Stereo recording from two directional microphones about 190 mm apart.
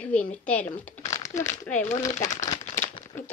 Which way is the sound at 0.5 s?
10° left (ahead or behind).